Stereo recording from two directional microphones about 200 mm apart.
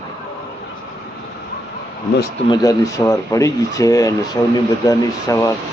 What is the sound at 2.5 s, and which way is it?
Speech, 15° left (ahead or behind).